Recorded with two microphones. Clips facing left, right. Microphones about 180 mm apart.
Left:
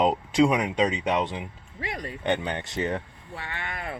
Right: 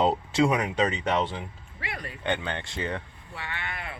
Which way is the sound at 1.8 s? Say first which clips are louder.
Left 4 dB; 40° left (ahead or behind).